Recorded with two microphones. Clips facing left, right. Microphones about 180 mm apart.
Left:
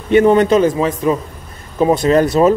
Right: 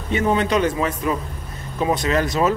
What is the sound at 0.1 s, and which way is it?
Speech, 60° left (ahead or behind).